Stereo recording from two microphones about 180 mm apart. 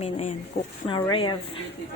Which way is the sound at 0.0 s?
35° left (ahead or behind).